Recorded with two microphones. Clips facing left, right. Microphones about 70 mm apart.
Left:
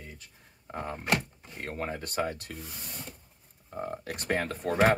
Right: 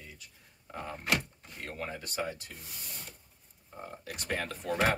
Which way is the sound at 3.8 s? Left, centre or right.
Left.